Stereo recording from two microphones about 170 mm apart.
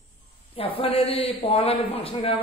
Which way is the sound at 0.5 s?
30° left (ahead or behind).